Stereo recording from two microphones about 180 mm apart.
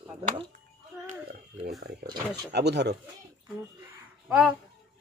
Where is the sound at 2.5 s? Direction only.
65° right (ahead or behind).